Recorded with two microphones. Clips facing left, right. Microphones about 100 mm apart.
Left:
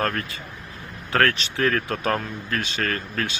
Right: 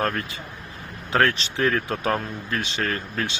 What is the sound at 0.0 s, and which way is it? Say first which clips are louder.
Speech: even; 15° right (ahead or behind).